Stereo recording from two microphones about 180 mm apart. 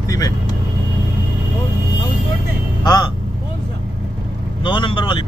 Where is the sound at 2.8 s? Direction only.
20° left (ahead or behind).